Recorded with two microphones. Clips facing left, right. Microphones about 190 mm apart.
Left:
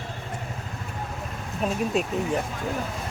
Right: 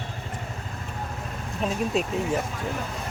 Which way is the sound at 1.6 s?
Centre (ahead or behind).